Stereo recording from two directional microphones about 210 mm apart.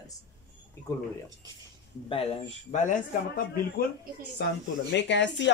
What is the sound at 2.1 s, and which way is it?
Speech, 30° left (ahead or behind).